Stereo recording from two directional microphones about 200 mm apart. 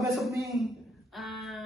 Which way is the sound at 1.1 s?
Centre (ahead or behind).